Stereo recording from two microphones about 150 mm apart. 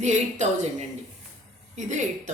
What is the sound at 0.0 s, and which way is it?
Speech, 50° right (ahead or behind).